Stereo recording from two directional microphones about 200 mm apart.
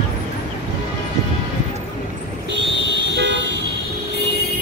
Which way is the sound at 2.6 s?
60° right (ahead or behind).